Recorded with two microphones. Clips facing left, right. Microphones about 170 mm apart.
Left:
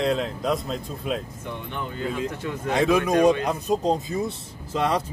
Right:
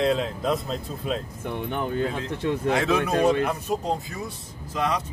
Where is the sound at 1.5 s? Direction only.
50° right (ahead or behind).